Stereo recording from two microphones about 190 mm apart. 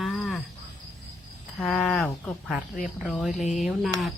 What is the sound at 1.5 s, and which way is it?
Speech, 5° left (ahead or behind).